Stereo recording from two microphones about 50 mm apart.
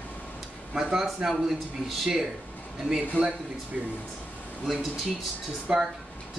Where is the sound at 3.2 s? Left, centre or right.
Left.